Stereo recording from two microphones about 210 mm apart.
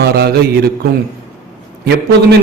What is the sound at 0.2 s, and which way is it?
Speech, 50° right (ahead or behind).